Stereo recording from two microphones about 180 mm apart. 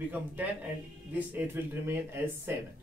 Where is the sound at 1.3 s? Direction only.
15° right (ahead or behind).